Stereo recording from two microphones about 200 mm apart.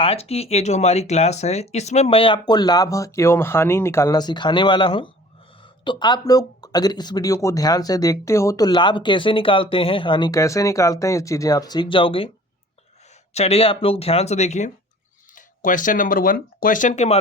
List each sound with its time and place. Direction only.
0.0 s speech: 30° left (ahead or behind)
13.3 s speech: 30° left (ahead or behind)